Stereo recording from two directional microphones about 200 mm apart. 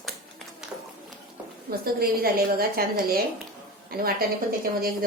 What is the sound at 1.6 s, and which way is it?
A woman's voice, 50° right (ahead or behind).